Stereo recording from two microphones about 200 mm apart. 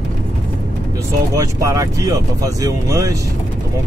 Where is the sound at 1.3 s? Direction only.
15° right (ahead or behind).